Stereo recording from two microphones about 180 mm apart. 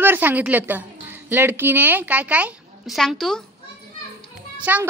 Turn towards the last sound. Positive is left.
turn(degrees=-10)  # may be behind; listen again after turning